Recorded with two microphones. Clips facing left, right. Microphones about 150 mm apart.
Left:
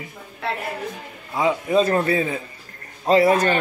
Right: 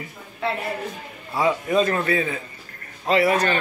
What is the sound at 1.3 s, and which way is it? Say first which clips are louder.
Speech: left 1 dB; 20° left (ahead or behind).